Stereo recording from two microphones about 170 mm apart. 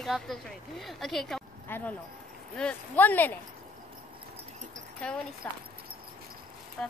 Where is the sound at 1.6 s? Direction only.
10° left (ahead or behind).